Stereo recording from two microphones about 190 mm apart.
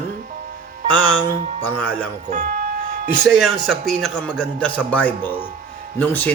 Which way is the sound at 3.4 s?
Centre (ahead or behind).